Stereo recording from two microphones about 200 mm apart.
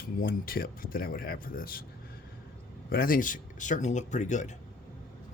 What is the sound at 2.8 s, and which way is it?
Speech, 45° left (ahead or behind).